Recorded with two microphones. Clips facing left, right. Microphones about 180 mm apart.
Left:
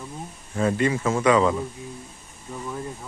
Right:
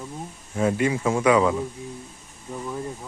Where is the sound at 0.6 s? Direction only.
10° right (ahead or behind).